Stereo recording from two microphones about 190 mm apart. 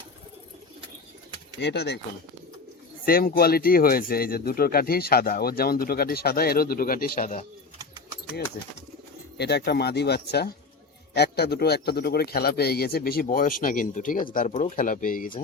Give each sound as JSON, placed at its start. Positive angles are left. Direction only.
{"t": 1.6, "sound": "a man's voice", "side_deg": 60}
{"t": 3.1, "sound": "speech", "side_deg": 50}
{"t": 9.4, "sound": "a man's voice", "side_deg": 60}